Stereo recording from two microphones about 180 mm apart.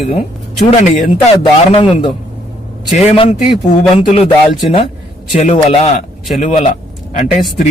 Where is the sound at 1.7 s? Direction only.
25° left (ahead or behind).